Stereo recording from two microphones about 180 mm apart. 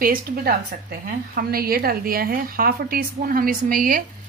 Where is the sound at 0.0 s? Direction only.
50° right (ahead or behind).